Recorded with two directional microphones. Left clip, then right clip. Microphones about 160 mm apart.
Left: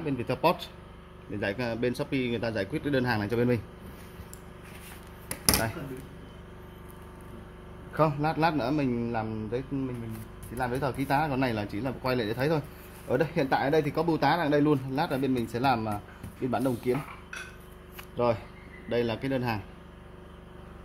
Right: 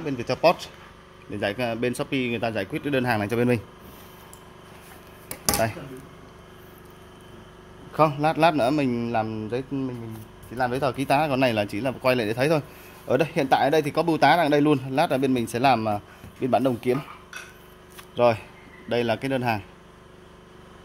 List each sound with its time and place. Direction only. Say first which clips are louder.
0.0 s speech: right 6 dB; 40° right (ahead or behind)
1.3 s speech: right 5 dB; 60° right (ahead or behind); by 3.6 s 75° right (ahead or behind)
5.3 s a sound: right 1 dB; 15° right (ahead or behind)
7.9 s a man's voice: right 6 dB; 90° right; by 16.9 s 65° right (ahead or behind)
18.1 s speech: right 7 dB; 75° right (ahead or behind)
18.9 s speech: right 5 dB; 60° right (ahead or behind)